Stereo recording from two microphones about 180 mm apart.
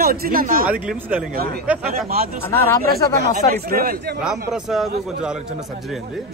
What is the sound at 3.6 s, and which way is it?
Speech, 55° right (ahead or behind).